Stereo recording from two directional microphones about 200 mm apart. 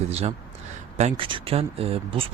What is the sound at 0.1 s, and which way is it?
A man's voice, 30° right (ahead or behind).